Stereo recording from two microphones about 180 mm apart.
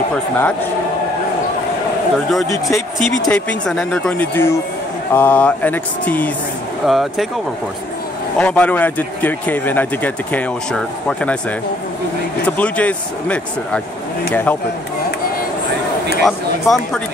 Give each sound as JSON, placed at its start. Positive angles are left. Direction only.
{"t": 0.1, "sound": "speech", "side_deg": 10}
{"t": 2.5, "sound": "speech", "side_deg": 20}
{"t": 3.3, "sound": "speech", "side_deg": 5}
{"t": 8.4, "sound": "speech", "side_deg": 5}
{"t": 12.4, "sound": "speech", "side_deg": 10}
{"t": 16.2, "sound": "speech", "side_deg": 0}